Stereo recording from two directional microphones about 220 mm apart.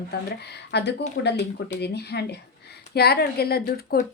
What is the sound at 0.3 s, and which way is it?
A woman's voice, 50° left (ahead or behind).